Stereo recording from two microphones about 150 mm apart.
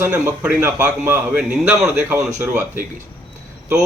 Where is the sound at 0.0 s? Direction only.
15° right (ahead or behind).